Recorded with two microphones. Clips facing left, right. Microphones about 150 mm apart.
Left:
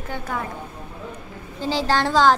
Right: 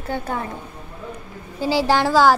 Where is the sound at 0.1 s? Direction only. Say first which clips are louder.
Right 5 dB; 35° right (ahead or behind).